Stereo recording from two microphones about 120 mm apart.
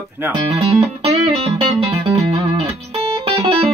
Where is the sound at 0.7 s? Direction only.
55° right (ahead or behind).